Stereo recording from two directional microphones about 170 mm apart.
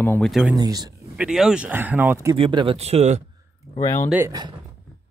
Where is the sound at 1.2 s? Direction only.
5° right (ahead or behind).